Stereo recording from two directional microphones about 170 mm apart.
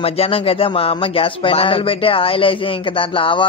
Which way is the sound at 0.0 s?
35° left (ahead or behind).